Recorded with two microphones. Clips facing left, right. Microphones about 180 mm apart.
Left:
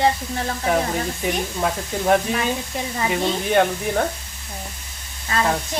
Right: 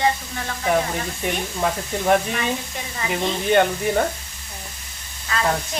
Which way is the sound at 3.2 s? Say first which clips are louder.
Right 2 dB; centre (ahead or behind).